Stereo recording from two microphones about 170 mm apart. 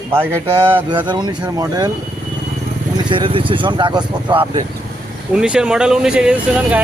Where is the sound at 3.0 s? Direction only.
30° right (ahead or behind).